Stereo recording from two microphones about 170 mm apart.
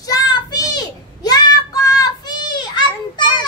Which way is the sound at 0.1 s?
25° left (ahead or behind).